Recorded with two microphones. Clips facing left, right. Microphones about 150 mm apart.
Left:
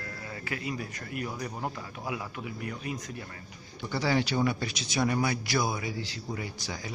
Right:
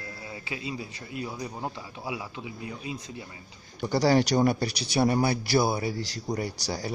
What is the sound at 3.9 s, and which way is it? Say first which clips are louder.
Speech: right 6 dB; 40° right (ahead or behind).